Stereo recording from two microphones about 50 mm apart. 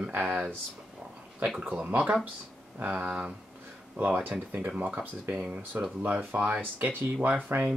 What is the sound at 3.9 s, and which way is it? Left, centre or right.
Speech, right.